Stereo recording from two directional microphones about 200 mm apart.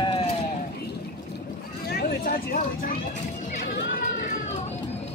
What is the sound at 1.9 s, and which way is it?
Vehicle, 50° left (ahead or behind).